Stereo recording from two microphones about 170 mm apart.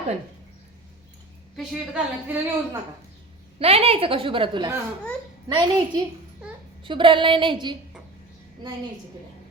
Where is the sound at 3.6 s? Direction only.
35° right (ahead or behind).